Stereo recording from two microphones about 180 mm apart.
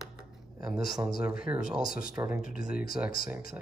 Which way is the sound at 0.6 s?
5° right (ahead or behind).